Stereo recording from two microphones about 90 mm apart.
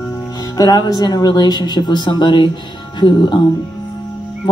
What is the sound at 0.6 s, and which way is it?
Speech, 50° left (ahead or behind).